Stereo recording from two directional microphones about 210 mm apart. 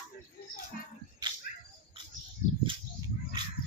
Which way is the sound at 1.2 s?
20° right (ahead or behind).